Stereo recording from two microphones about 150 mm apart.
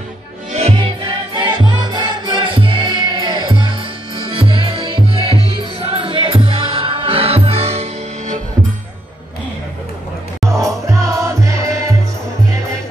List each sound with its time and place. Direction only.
0.5 s music: 40° right (ahead or behind)
1.3 s music: 30° right (ahead or behind)
10.9 s music: 20° right (ahead or behind)